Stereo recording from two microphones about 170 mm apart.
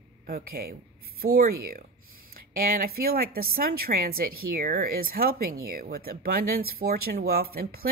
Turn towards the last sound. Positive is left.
turn(degrees=-65)  # may be behind; listen again after turning